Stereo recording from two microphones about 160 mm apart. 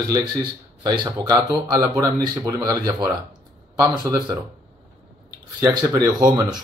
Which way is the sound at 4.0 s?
25° right (ahead or behind).